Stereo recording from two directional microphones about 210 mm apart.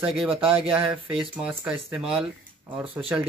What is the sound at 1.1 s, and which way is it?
A man's voice, 5° right (ahead or behind).